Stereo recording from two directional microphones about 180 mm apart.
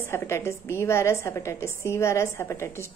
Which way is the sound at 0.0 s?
15° left (ahead or behind).